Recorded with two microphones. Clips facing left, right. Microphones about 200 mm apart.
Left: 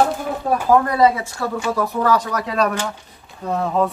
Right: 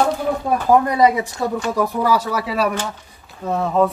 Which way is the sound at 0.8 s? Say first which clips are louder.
Right 1 dB; 15° right (ahead or behind).